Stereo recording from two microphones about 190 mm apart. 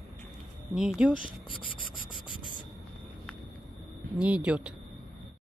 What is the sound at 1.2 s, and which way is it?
Speech, 25° left (ahead or behind).